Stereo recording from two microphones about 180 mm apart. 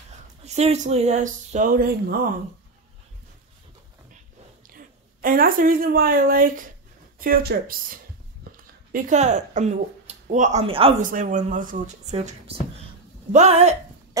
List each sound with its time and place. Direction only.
0.5 s speech: 40° right (ahead or behind); by 2.1 s 55° right (ahead or behind)
4.6 s a woman's voice: 50° right (ahead or behind); by 11.0 s 30° right (ahead or behind)
11.0 s speech: 50° right (ahead or behind)